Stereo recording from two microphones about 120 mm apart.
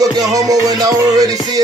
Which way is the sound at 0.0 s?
30° right (ahead or behind).